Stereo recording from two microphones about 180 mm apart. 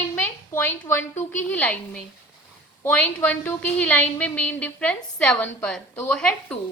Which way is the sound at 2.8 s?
10° left (ahead or behind).